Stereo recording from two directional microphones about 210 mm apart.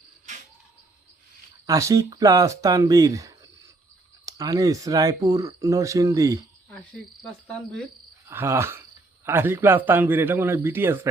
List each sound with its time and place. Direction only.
1.6 s speech: 15° right (ahead or behind)
7.2 s cricket: 5° left (ahead or behind)
8.3 s speech: 10° right (ahead or behind)